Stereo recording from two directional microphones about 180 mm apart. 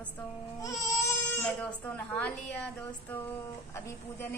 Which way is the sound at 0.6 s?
20° left (ahead or behind).